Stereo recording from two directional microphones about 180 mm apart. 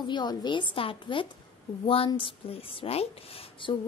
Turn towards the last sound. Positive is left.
turn(degrees=30)  # may be behind; listen again after turning